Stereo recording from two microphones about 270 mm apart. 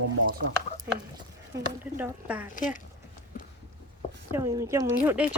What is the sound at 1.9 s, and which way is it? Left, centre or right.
Speech, centre.